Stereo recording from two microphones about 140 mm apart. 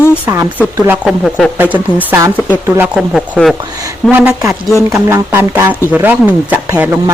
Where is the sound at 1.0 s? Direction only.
Centre (ahead or behind).